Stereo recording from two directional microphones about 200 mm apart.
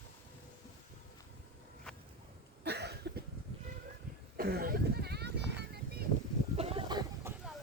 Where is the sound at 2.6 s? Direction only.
55° right (ahead or behind).